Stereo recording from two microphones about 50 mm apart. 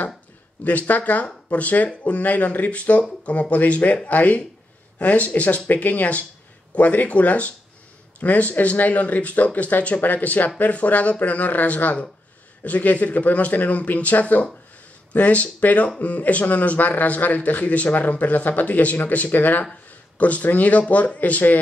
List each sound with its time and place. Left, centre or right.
0.7 s speech: left